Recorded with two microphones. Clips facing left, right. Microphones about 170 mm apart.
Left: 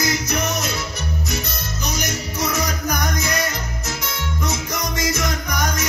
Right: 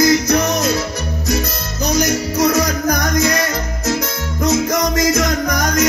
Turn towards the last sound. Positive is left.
turn(degrees=-45)  # may be behind; listen again after turning